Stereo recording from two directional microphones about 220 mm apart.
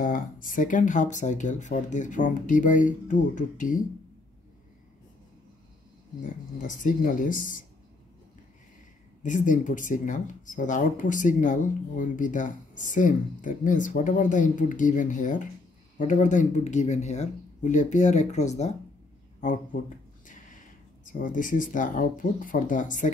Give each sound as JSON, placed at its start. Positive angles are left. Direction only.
{"t": 0.0, "sound": "speech", "side_deg": 40}
{"t": 6.2, "sound": "speech", "side_deg": 35}
{"t": 9.2, "sound": "speech", "side_deg": 35}